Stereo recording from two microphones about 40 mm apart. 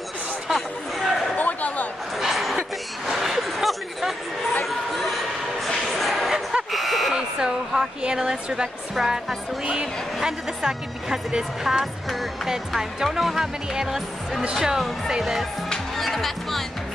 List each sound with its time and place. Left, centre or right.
0.5 s chatter: centre
1.3 s a sound: left
2.1 s a sound: centre
7.2 s buzzer: centre
8.0 s speech: centre
11.6 s music: centre
12.4 s speech: centre
16.0 s music: centre